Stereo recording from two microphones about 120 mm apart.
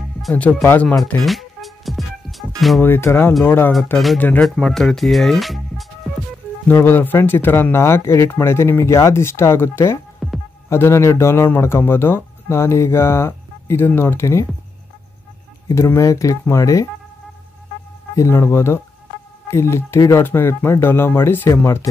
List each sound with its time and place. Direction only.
0.3 s speech: 10° left (ahead or behind)
1.2 s music: centre (ahead or behind)
2.8 s a man's voice: 20° left (ahead or behind)
4.4 s speech: 5° left (ahead or behind)
6.7 s a man's voice: 20° left (ahead or behind)
10.2 s music: centre (ahead or behind)
10.7 s a man's voice: 20° left (ahead or behind)
15.7 s a man's voice: 25° left (ahead or behind)
18.1 s a man's voice: 25° left (ahead or behind)